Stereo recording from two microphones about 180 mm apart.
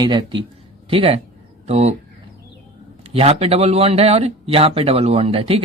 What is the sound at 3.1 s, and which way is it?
Speech, 35° right (ahead or behind).